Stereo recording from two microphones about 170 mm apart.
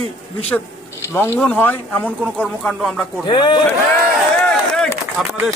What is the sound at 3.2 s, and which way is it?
Speech, 25° left (ahead or behind).